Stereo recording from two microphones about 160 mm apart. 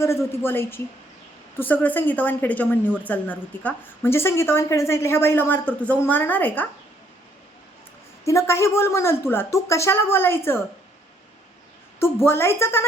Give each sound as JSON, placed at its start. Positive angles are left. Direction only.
{"t": 0.4, "sound": "a woman's voice", "side_deg": 15}
{"t": 8.2, "sound": "a woman's voice", "side_deg": 20}
{"t": 11.9, "sound": "a woman's voice", "side_deg": 15}